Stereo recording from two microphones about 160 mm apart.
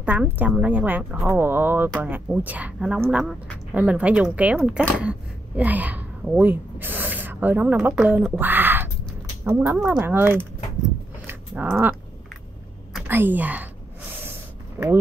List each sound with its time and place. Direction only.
0.0 s speech: 10° right (ahead or behind)
11.2 s a sound: 10° right (ahead or behind)
12.9 s a woman's voice: 10° right (ahead or behind)
14.8 s speech: 15° right (ahead or behind)